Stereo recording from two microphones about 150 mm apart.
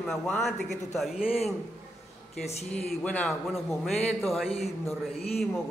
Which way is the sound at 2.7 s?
10° left (ahead or behind).